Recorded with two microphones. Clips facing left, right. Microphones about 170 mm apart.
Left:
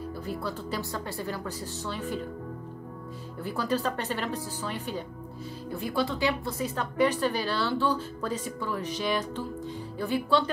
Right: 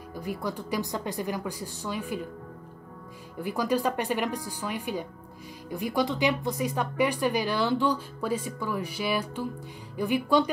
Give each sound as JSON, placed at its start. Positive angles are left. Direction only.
{"t": 0.1, "sound": "speech", "side_deg": -15}
{"t": 3.3, "sound": "speech", "side_deg": -15}